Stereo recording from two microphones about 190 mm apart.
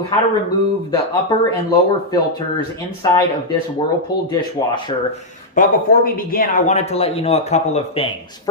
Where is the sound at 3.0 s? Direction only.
20° left (ahead or behind).